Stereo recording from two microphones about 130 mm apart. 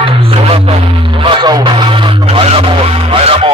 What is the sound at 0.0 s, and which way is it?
Music, 45° right (ahead or behind).